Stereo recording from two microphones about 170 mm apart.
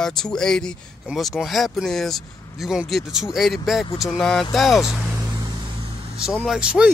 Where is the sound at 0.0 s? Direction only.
5° left (ahead or behind).